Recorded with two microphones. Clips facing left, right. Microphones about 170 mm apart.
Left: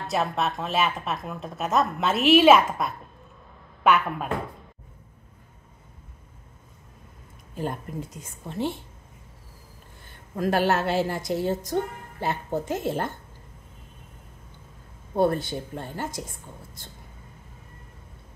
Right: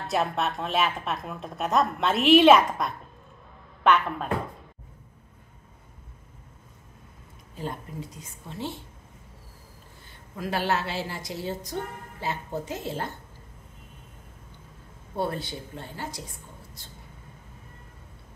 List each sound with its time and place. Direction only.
0.0 s a woman's voice: centre (ahead or behind)
8.2 s a woman's voice: 55° left (ahead or behind)
10.3 s a woman's voice: 50° left (ahead or behind)
15.1 s a woman's voice: 45° left (ahead or behind)